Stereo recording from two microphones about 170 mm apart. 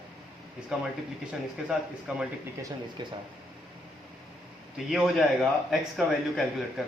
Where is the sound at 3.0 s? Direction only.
25° right (ahead or behind).